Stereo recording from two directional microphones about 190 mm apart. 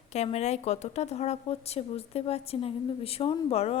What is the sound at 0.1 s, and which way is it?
A woman's voice, 35° left (ahead or behind).